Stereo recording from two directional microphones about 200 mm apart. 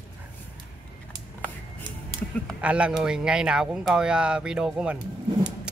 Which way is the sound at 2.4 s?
5° right (ahead or behind).